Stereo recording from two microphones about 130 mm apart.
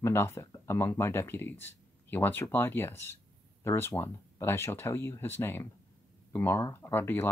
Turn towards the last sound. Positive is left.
turn(degrees=15)  # may be behind; listen again after turning